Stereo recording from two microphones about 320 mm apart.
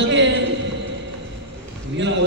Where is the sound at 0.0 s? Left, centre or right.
Right.